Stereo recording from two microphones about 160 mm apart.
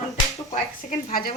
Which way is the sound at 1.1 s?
65° left (ahead or behind).